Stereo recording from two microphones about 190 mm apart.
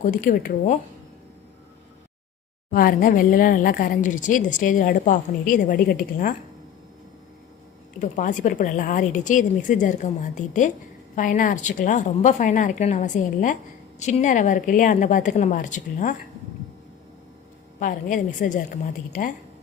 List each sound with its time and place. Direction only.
0.0 s a woman's voice: 45° left (ahead or behind)
2.7 s a woman's voice: 45° left (ahead or behind)
7.9 s a woman's voice: 40° left (ahead or behind)
17.7 s a woman's voice: 45° left (ahead or behind)